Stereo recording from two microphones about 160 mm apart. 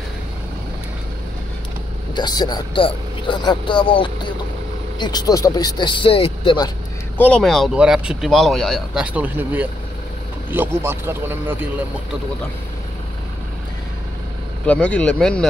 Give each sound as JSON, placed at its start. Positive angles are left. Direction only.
{"t": 2.1, "sound": "speech", "side_deg": 25}
{"t": 7.2, "sound": "speech", "side_deg": 5}
{"t": 9.0, "sound": "speech", "side_deg": -10}
{"t": 14.7, "sound": "speech", "side_deg": 10}